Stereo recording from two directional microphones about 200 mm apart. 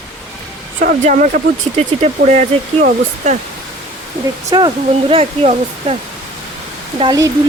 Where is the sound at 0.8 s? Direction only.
40° right (ahead or behind).